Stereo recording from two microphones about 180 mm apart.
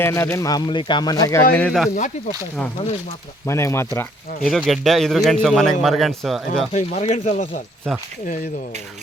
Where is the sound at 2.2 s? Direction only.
40° left (ahead or behind).